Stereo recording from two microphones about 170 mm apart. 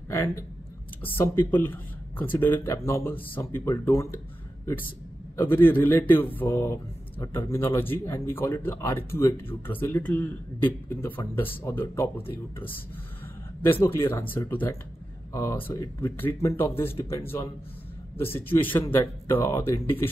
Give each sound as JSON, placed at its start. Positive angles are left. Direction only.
{"t": 0.1, "sound": "a man's voice", "side_deg": 15}
{"t": 18.5, "sound": "speech", "side_deg": 10}